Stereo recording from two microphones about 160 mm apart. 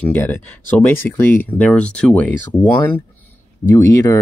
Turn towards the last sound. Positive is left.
turn(degrees=15)  # may be behind; listen again after turning